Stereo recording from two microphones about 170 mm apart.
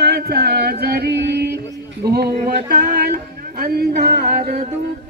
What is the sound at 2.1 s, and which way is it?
Speech, 60° right (ahead or behind).